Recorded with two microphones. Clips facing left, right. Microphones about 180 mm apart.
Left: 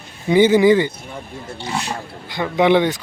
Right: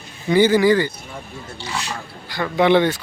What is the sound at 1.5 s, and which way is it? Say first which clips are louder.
Speech: left 3 dB; 55° left (ahead or behind).